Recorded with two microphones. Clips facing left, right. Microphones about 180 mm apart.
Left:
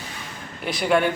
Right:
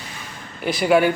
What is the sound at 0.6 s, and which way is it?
Speech, centre (ahead or behind).